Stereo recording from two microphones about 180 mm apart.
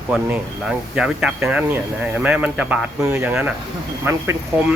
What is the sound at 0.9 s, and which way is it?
Speech, 5° right (ahead or behind).